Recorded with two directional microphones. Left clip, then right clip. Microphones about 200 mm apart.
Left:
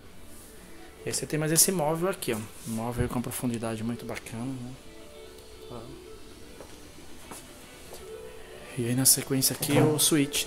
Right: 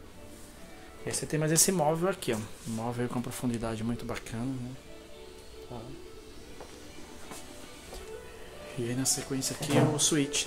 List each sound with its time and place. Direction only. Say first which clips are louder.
1.0 s speech: left 1 dB; 15° left (ahead or behind)
8.8 s speech: left 5 dB; 40° left (ahead or behind)